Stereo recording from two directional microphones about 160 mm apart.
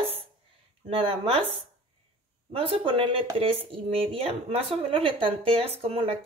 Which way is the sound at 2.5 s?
35° right (ahead or behind).